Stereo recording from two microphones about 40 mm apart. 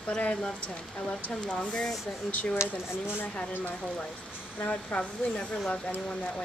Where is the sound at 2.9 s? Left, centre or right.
Left.